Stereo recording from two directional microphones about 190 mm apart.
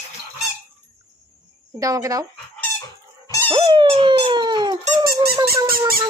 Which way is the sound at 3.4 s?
25° right (ahead or behind).